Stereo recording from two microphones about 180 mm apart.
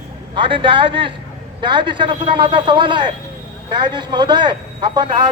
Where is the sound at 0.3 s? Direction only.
30° right (ahead or behind).